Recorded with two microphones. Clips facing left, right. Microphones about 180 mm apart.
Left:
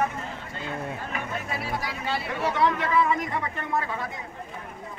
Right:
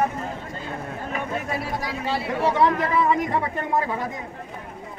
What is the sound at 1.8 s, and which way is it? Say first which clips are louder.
Speech: right 4 dB; 35° right (ahead or behind).